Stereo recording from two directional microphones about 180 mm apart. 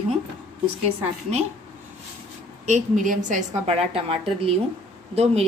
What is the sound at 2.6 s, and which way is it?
Speech, 45° right (ahead or behind).